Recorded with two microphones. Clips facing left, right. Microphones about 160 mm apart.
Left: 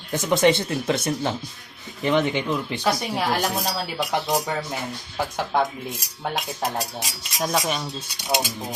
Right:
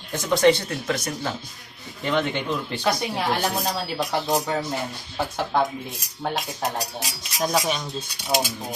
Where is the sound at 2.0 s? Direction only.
15° left (ahead or behind).